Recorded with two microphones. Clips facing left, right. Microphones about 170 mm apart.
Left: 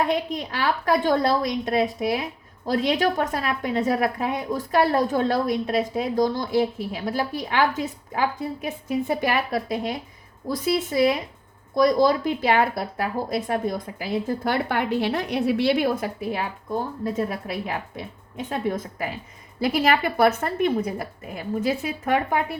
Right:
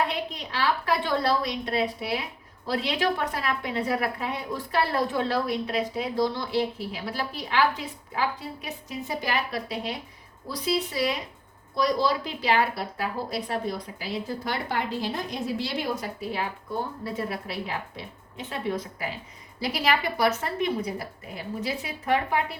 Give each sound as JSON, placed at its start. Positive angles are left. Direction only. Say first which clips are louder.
{"t": 0.1, "sound": "a woman's voice", "louder": "left 7 dB", "side_deg": 45}